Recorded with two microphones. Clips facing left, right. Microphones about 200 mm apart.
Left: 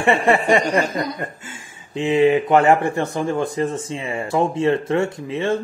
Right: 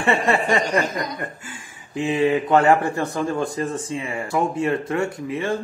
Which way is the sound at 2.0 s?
25° left (ahead or behind).